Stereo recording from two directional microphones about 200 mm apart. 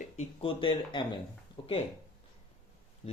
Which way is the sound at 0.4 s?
25° left (ahead or behind).